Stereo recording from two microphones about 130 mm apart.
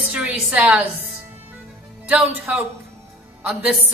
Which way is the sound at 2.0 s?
10° right (ahead or behind).